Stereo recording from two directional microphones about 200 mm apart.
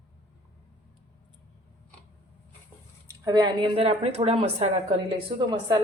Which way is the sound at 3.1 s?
20° right (ahead or behind).